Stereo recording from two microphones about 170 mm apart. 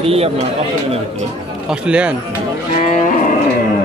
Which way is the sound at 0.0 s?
35° right (ahead or behind).